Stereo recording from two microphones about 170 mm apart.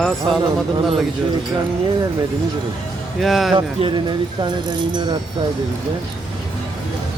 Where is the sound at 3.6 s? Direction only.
30° right (ahead or behind).